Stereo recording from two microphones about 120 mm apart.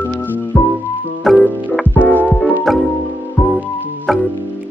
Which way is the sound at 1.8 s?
15° left (ahead or behind).